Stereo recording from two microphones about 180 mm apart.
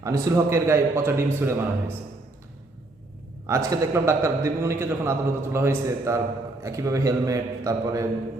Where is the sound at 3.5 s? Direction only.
15° right (ahead or behind).